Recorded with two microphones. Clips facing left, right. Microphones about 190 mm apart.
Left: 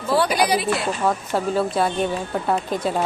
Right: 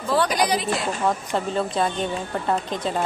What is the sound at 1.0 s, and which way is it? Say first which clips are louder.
Speech: left 2 dB; 5° left (ahead or behind).